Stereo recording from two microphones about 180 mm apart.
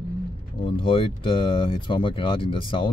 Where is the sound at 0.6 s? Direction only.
30° left (ahead or behind).